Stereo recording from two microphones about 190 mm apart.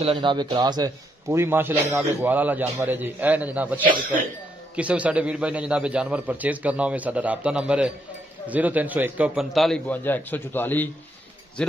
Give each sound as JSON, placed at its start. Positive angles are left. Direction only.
{"t": 0.0, "sound": "a man's voice", "side_deg": -25}